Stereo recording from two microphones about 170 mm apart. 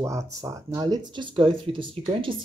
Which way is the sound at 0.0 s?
15° right (ahead or behind).